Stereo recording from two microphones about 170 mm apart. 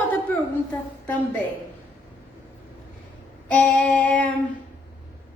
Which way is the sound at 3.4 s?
10° left (ahead or behind).